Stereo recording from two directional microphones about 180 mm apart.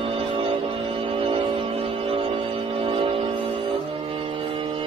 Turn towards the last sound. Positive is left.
turn(degrees=-30)  # may be behind; listen again after turning